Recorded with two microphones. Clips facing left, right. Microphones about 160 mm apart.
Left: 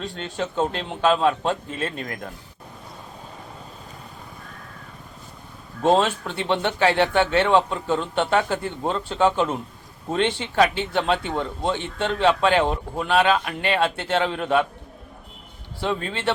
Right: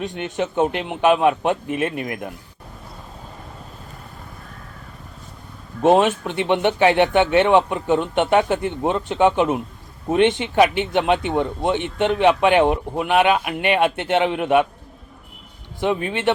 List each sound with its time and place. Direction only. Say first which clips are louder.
0.0 s speech: right 4 dB; 15° right (ahead or behind)
5.8 s speech: right 4 dB; 15° right (ahead or behind)
15.8 s speech: right 5 dB; 15° right (ahead or behind)